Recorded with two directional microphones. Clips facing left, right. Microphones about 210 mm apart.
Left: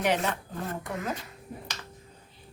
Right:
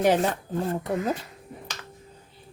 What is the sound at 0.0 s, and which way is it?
Speech, 35° right (ahead or behind).